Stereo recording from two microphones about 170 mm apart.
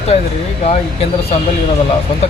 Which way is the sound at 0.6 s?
40° left (ahead or behind).